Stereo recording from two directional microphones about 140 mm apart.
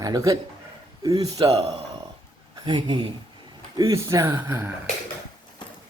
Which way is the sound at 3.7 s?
25° right (ahead or behind).